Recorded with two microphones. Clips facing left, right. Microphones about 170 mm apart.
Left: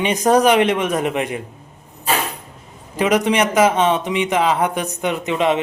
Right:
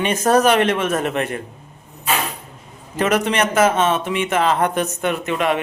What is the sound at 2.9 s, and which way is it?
A man's voice, 15° left (ahead or behind).